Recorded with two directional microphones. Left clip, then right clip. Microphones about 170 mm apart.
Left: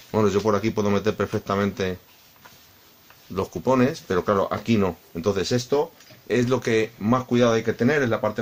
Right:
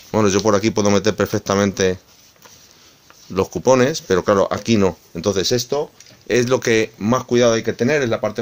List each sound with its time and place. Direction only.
0.1 s speech: 50° right (ahead or behind)
3.3 s speech: 50° right (ahead or behind)